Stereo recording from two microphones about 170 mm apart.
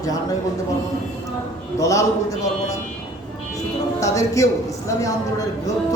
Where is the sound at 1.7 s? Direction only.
20° left (ahead or behind).